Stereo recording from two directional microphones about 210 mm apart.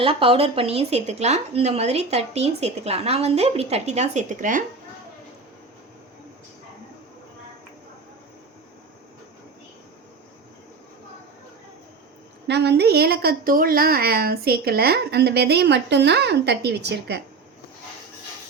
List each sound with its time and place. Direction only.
0.0 s speech: 25° right (ahead or behind)
12.5 s a woman's voice: 55° right (ahead or behind)